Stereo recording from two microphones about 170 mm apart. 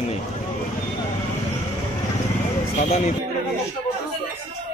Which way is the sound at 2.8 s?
40° left (ahead or behind).